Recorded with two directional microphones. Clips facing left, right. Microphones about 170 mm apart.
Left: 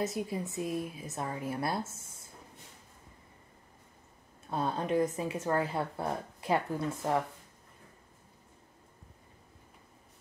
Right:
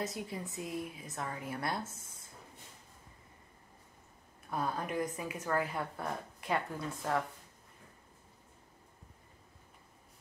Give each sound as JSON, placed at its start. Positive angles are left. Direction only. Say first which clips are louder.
{"t": 0.0, "sound": "speech", "louder": "left 5 dB", "side_deg": 25}
{"t": 4.5, "sound": "speech", "louder": "left 5 dB", "side_deg": 25}